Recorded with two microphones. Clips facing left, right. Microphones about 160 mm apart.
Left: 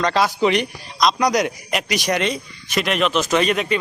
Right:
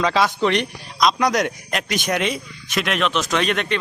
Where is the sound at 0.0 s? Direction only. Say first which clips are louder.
Left 1 dB; centre (ahead or behind).